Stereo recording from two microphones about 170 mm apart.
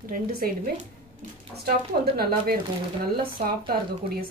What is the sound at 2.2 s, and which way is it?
Speech, 65° right (ahead or behind).